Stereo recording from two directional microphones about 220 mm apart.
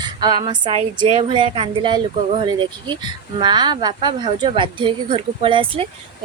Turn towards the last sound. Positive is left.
turn(degrees=-25)  # may be behind; listen again after turning